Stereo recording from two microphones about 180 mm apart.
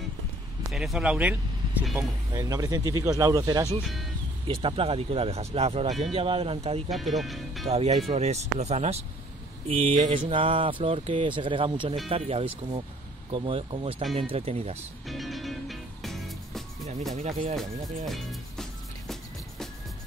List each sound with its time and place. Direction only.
0.7 s speech: centre (ahead or behind)
2.0 s speech: 20° right (ahead or behind)
3.8 s speech: centre (ahead or behind)
4.6 s speech: 30° right (ahead or behind)
5.9 s speech: centre (ahead or behind)
6.1 s speech: 30° right (ahead or behind)
6.9 s speech: centre (ahead or behind)
7.6 s speech: 35° right (ahead or behind)
15.0 s music: centre (ahead or behind)
17.1 s speech: 40° right (ahead or behind)
18.0 s music: centre (ahead or behind)